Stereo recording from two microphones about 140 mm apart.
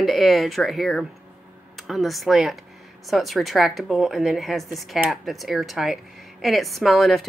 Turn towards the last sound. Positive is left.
turn(degrees=0)  # may be behind; listen again after turning